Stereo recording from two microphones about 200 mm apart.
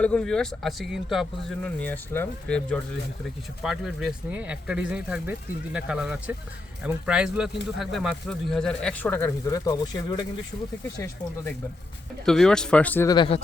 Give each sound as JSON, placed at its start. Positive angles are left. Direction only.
{"t": 0.0, "sound": "speech", "side_deg": 5}
{"t": 12.2, "sound": "speech", "side_deg": 0}
{"t": 13.1, "sound": "speech", "side_deg": 25}